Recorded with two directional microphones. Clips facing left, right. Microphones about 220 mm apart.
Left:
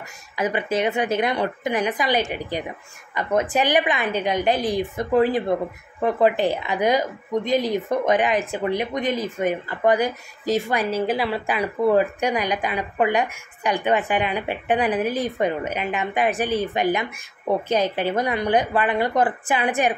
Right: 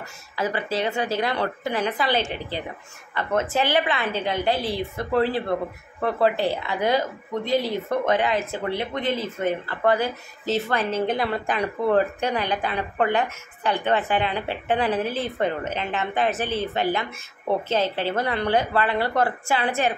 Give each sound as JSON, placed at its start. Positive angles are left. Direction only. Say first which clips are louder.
{"t": 0.4, "sound": "speech", "louder": "left 3 dB", "side_deg": 20}